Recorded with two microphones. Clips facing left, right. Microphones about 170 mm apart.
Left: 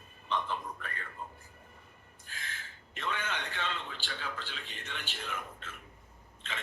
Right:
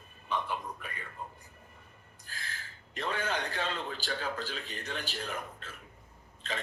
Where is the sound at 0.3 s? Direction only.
10° right (ahead or behind).